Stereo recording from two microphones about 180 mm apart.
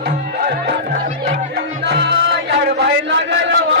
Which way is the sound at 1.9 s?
70° right (ahead or behind).